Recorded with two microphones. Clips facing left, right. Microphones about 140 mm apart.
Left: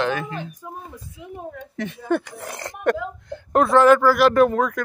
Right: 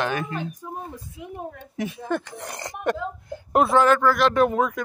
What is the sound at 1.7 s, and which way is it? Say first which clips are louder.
Speech: right 1 dB; 10° right (ahead or behind).